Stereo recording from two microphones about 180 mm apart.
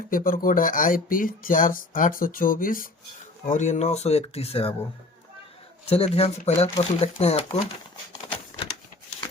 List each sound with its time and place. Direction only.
0.1 s speech: 50° left (ahead or behind); by 4.7 s 35° left (ahead or behind)
5.8 s speech: 35° left (ahead or behind)